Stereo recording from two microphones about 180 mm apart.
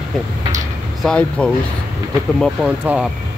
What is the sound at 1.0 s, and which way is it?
Speech, 5° left (ahead or behind).